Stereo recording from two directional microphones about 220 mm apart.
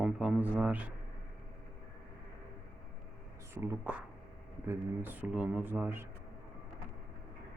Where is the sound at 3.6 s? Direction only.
10° right (ahead or behind).